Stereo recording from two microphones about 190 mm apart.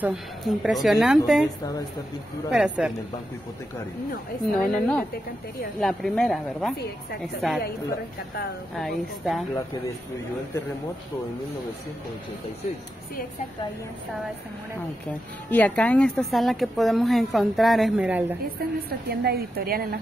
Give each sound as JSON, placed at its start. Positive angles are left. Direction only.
{"t": 0.0, "sound": "a woman's voice", "side_deg": 0}
{"t": 2.5, "sound": "a woman's voice", "side_deg": -5}
{"t": 4.5, "sound": "a woman's voice", "side_deg": 5}
{"t": 8.7, "sound": "a woman's voice", "side_deg": 0}
{"t": 15.5, "sound": "a woman's voice", "side_deg": 10}
{"t": 18.9, "sound": "a woman's voice", "side_deg": -55}